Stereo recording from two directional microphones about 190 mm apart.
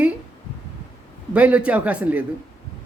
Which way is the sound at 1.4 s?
5° right (ahead or behind).